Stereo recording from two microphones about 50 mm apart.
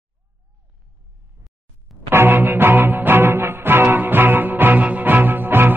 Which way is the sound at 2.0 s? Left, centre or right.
Right.